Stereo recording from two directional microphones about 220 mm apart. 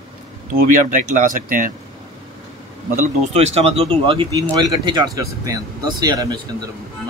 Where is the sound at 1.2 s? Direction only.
40° right (ahead or behind).